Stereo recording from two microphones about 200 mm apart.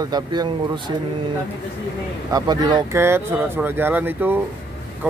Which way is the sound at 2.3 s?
20° right (ahead or behind).